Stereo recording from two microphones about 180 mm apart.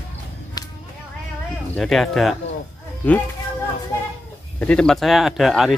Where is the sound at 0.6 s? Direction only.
20° left (ahead or behind).